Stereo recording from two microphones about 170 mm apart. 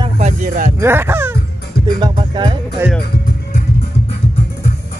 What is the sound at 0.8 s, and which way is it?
Speech, 15° right (ahead or behind).